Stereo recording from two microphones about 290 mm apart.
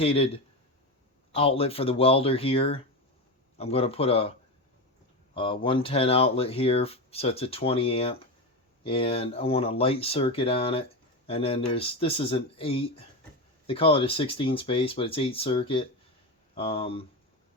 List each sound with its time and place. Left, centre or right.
0.0 s speech: centre
1.3 s speech: centre
5.3 s speech: centre